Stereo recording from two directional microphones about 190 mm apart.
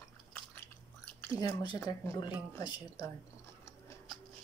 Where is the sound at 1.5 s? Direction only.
25° left (ahead or behind).